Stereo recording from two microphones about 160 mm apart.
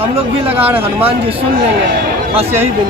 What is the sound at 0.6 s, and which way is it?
Speech, 10° right (ahead or behind).